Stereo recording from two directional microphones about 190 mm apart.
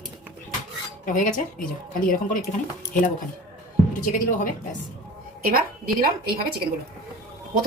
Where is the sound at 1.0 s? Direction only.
45° left (ahead or behind).